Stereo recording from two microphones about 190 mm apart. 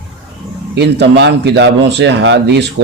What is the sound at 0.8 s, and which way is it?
A man's voice, 60° right (ahead or behind).